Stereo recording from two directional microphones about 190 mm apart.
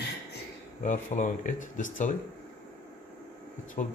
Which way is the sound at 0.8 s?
45° left (ahead or behind).